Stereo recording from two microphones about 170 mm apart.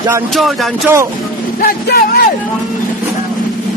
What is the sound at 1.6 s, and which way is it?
Speech, 60° left (ahead or behind).